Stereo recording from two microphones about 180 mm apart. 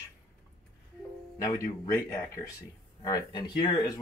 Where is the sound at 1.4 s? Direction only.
20° left (ahead or behind).